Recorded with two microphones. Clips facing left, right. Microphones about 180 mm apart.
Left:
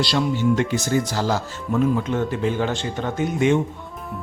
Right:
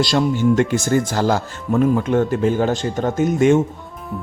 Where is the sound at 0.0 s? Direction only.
45° right (ahead or behind).